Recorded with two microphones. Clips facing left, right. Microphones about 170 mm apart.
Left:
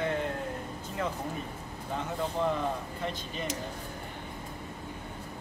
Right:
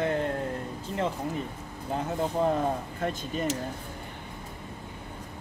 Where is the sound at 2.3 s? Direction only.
40° right (ahead or behind).